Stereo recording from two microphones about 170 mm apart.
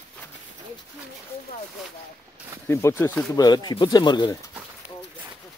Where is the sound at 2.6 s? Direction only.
15° left (ahead or behind).